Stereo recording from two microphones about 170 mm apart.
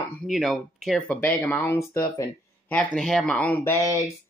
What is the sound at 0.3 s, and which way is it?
Speech, centre (ahead or behind).